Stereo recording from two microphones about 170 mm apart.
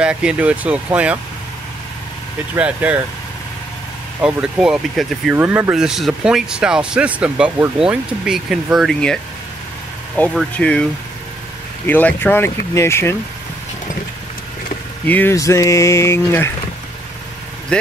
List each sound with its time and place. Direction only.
0.0 s speech: 5° right (ahead or behind)
2.5 s speech: 10° right (ahead or behind)
4.2 s speech: 5° right (ahead or behind)
10.3 s speech: 5° left (ahead or behind)
11.9 s speech: 10° left (ahead or behind)
15.0 s speech: 10° left (ahead or behind)